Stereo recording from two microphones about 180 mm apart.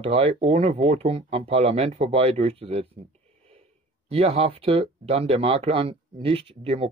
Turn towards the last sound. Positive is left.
turn(degrees=-30)  # may be behind; listen again after turning